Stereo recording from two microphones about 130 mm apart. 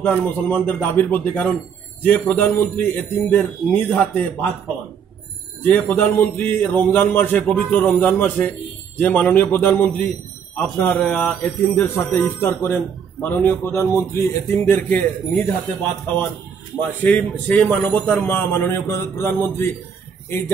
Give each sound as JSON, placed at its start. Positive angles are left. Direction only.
{"t": 0.0, "sound": "a man's voice", "side_deg": 15}
{"t": 5.6, "sound": "a man's voice", "side_deg": 15}